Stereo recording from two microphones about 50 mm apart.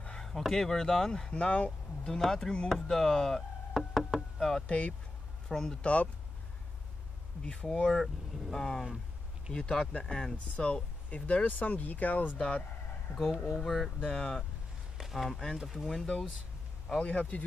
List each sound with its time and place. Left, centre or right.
0.2 s speech: centre
1.3 s speech: left
2.0 s speech: centre
2.7 s knock: centre
4.6 s speech: left
5.5 s speech: centre
7.4 s speech: centre; by 12.4 s left
12.4 s speech: centre
13.1 s speech: left
14.0 s speech: centre
15.0 s a sound: centre
15.2 s speech: centre
17.0 s speech: left